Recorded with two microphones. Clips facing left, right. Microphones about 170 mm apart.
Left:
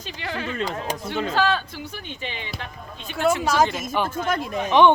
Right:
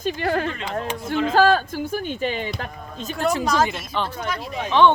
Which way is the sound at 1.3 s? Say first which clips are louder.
Right 6 dB; 45° right (ahead or behind).